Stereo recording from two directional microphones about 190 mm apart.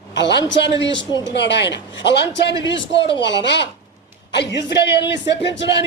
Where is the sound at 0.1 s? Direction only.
65° left (ahead or behind).